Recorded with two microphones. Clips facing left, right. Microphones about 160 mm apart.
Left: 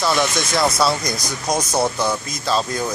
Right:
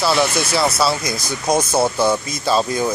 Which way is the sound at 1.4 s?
25° right (ahead or behind).